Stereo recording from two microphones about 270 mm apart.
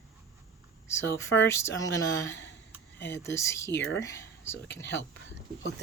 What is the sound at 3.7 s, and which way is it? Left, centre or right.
Speech, left.